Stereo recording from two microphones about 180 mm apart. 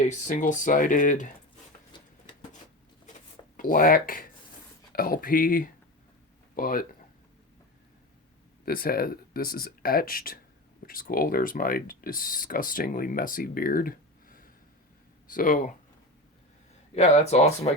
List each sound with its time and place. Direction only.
0.0 s speech: 40° left (ahead or behind)
3.6 s speech: 50° left (ahead or behind)
8.6 s speech: 55° left (ahead or behind)
16.9 s speech: 40° left (ahead or behind)